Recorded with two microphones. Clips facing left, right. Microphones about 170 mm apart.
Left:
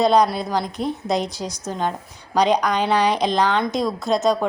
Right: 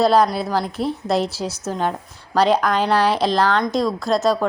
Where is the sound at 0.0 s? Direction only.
Centre (ahead or behind).